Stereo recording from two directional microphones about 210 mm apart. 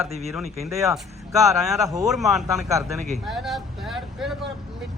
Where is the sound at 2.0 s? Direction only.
Centre (ahead or behind).